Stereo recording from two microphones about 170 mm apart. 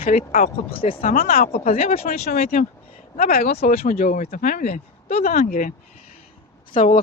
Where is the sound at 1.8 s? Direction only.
40° left (ahead or behind).